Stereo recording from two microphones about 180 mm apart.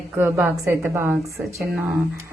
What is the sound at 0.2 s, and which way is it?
A woman's voice, 10° right (ahead or behind).